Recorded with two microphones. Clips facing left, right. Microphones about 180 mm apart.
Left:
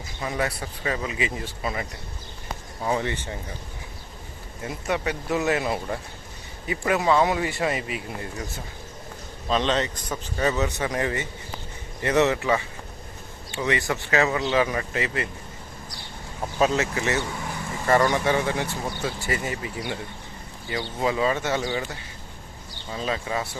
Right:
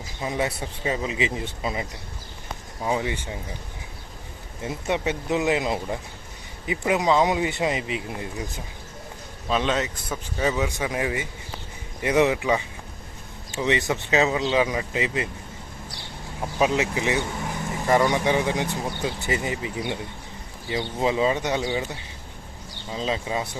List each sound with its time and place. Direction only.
0.2 s a man's voice: 20° right (ahead or behind)
4.6 s speech: 20° right (ahead or behind)
16.6 s a man's voice: 15° right (ahead or behind)